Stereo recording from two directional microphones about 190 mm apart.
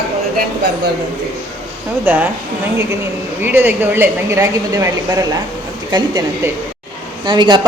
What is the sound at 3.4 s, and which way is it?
A woman's voice, 10° right (ahead or behind).